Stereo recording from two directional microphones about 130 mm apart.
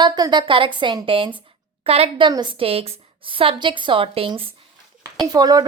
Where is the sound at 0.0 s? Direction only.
35° right (ahead or behind).